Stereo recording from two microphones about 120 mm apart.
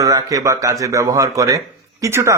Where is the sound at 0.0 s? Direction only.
30° right (ahead or behind).